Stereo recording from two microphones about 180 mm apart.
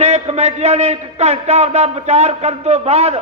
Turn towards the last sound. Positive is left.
turn(degrees=-35)  # may be behind; listen again after turning